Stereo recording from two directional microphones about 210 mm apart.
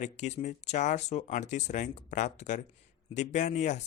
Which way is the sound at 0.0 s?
35° left (ahead or behind).